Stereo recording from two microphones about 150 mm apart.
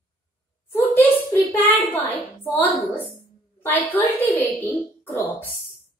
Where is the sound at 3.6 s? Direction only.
15° left (ahead or behind).